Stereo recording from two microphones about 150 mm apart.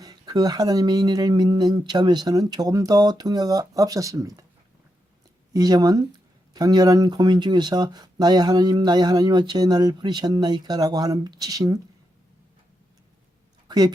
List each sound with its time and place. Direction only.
0.0 s speech: 25° right (ahead or behind)
5.5 s speech: 25° right (ahead or behind)
13.7 s a sound: 25° right (ahead or behind)